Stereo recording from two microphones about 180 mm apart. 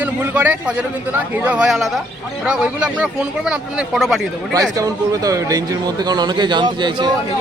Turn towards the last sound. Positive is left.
turn(degrees=-25)  # may be behind; listen again after turning